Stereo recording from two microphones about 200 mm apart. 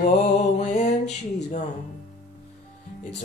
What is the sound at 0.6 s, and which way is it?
Music, 35° left (ahead or behind).